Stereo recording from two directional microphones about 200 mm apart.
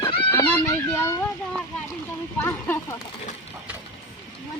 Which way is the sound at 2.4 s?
10° left (ahead or behind).